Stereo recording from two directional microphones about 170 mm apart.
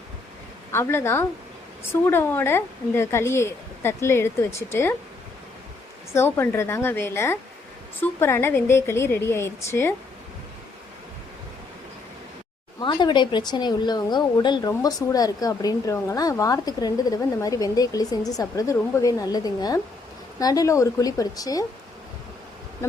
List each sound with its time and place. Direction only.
0.7 s a woman's voice: 15° left (ahead or behind)
6.1 s a woman's voice: 15° left (ahead or behind)
12.8 s speech: 25° left (ahead or behind)